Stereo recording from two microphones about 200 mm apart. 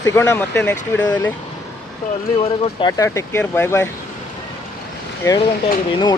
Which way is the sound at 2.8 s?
20° left (ahead or behind).